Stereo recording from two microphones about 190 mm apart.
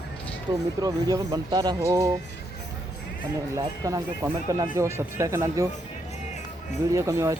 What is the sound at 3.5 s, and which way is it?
Speech, 20° right (ahead or behind).